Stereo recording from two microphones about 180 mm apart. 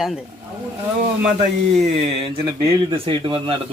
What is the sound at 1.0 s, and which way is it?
Speech, 40° right (ahead or behind).